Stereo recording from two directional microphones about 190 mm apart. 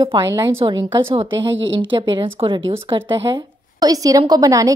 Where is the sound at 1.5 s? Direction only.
75° right (ahead or behind).